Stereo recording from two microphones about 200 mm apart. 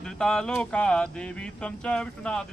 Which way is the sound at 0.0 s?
5° left (ahead or behind).